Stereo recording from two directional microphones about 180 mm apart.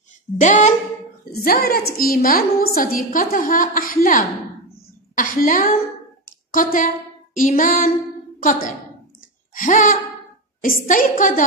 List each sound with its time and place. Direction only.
0.4 s a woman's voice: 45° left (ahead or behind)
1.3 s a woman's voice: 60° left (ahead or behind)
9.5 s a sound: 45° left (ahead or behind)
10.6 s a woman's voice: 50° left (ahead or behind)